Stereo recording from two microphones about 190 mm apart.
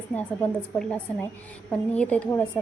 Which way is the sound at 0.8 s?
5° left (ahead or behind).